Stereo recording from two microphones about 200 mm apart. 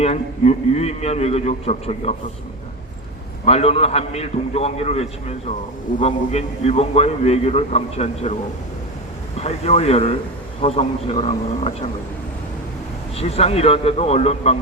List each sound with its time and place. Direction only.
0.0 s a man's voice: 30° left (ahead or behind)
3.4 s a man's voice: 30° left (ahead or behind)
9.4 s a man's voice: 30° left (ahead or behind)
13.1 s a man's voice: 30° left (ahead or behind)